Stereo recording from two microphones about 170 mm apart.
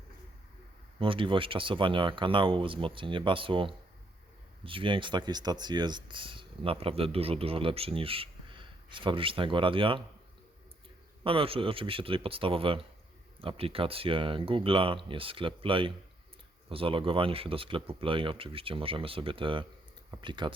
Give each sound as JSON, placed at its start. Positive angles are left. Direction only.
{"t": 0.9, "sound": "speech", "side_deg": -30}
{"t": 11.2, "sound": "speech", "side_deg": -30}